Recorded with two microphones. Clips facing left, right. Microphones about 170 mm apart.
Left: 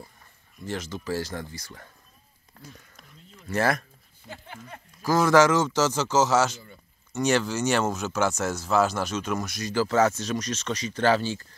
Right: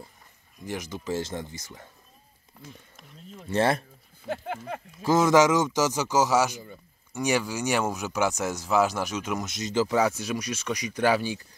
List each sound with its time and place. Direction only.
0.7 s speech: 15° right (ahead or behind)
3.4 s speech: 30° right (ahead or behind)
4.3 s speech: 80° right
5.0 s a man's voice: 20° right (ahead or behind)